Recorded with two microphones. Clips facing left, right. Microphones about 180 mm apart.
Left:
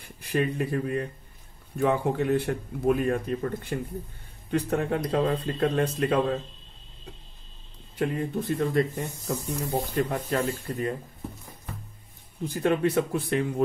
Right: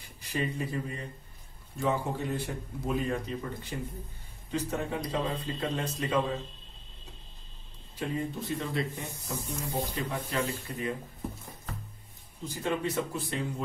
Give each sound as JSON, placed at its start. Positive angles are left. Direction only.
{"t": 0.3, "sound": "speech", "side_deg": 60}
{"t": 8.0, "sound": "speech", "side_deg": 55}
{"t": 12.4, "sound": "speech", "side_deg": 60}